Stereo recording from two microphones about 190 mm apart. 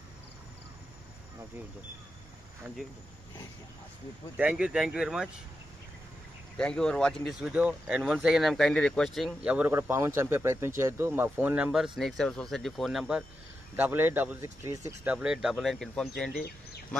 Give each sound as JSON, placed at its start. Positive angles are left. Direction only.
{"t": 2.6, "sound": "speech", "side_deg": 0}
{"t": 4.4, "sound": "speech", "side_deg": -5}
{"t": 6.5, "sound": "speech", "side_deg": 5}
{"t": 15.1, "sound": "speech", "side_deg": -5}
{"t": 16.3, "sound": "speech", "side_deg": 55}